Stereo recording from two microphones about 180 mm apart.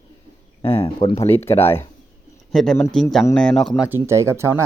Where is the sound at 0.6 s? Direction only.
30° left (ahead or behind).